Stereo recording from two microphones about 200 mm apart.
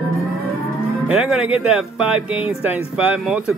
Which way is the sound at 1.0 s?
5° right (ahead or behind).